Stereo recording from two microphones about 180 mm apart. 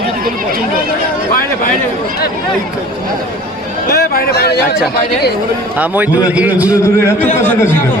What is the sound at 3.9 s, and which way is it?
Speech, 60° left (ahead or behind).